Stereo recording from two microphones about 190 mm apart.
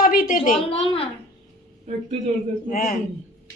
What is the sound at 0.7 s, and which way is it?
Speech, 30° left (ahead or behind).